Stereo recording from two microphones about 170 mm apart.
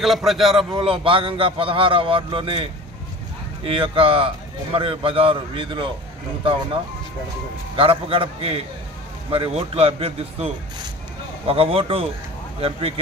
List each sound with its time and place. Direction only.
0.0 s a man's voice: centre (ahead or behind)
0.7 s speech: 30° right (ahead or behind)
7.7 s speech: 30° right (ahead or behind)